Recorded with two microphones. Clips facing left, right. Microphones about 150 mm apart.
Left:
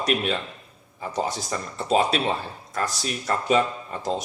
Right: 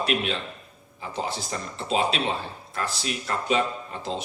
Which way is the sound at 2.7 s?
40° left (ahead or behind).